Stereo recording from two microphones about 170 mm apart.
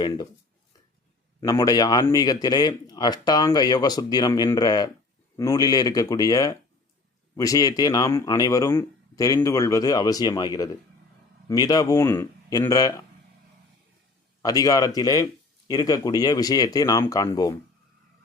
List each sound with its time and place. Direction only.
1.4 s speech: 20° left (ahead or behind)
14.4 s speech: 20° left (ahead or behind)